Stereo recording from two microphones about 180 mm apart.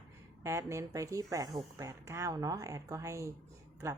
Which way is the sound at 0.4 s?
15° right (ahead or behind).